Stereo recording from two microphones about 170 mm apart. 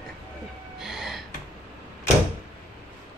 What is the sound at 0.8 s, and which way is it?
Gasp, centre (ahead or behind).